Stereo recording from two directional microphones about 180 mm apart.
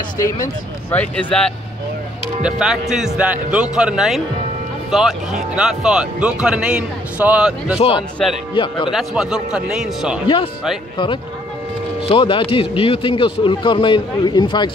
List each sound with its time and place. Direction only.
0.2 s speech: 15° left (ahead or behind)
8.5 s a man's voice: 25° left (ahead or behind)
8.9 s speech: 5° right (ahead or behind)
10.2 s a man's voice: 30° left (ahead or behind)
12.1 s a man's voice: 30° left (ahead or behind)